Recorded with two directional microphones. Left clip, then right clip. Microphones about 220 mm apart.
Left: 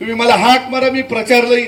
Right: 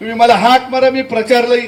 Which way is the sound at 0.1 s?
55° left (ahead or behind).